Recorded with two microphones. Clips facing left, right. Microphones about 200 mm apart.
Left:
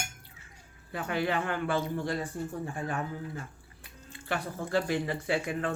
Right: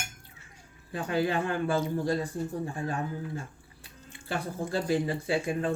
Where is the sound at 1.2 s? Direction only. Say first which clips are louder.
Right 3 dB; 25° right (ahead or behind).